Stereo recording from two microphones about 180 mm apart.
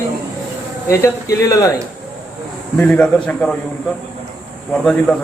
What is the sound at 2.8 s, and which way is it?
Speech, 5° left (ahead or behind).